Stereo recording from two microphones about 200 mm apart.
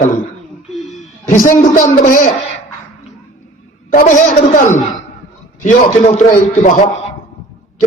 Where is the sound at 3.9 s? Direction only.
40° left (ahead or behind).